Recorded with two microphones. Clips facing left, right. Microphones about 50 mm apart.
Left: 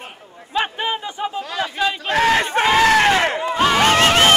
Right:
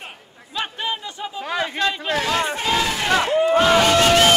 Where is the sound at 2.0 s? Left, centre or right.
Left.